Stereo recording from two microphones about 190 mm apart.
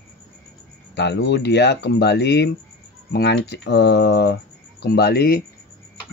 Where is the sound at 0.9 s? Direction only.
65° left (ahead or behind).